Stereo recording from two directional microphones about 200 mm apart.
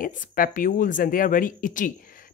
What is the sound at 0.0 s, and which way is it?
A woman's voice, 45° left (ahead or behind).